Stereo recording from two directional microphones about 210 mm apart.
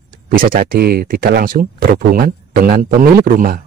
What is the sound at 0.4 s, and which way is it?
Speech, 40° right (ahead or behind).